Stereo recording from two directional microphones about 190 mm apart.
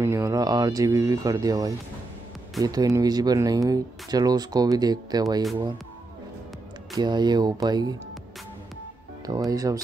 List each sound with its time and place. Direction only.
0.0 s speech: 15° right (ahead or behind)
7.0 s speech: 20° right (ahead or behind)
9.2 s speech: 20° right (ahead or behind)